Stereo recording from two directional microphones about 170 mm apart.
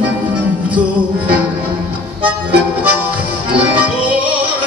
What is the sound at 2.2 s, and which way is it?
Music, 10° right (ahead or behind).